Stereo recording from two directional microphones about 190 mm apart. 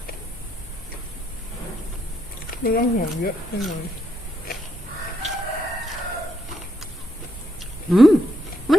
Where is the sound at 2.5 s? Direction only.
50° left (ahead or behind).